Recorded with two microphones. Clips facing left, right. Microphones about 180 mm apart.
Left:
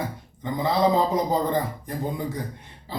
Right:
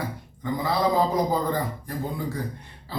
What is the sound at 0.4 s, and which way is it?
Speech, 20° left (ahead or behind).